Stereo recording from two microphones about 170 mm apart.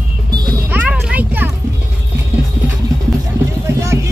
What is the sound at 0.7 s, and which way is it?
Speech, 10° right (ahead or behind).